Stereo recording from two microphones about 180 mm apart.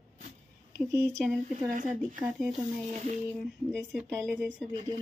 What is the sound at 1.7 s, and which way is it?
Speech, 45° right (ahead or behind).